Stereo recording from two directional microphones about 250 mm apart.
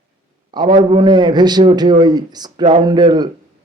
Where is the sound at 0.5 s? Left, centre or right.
Centre.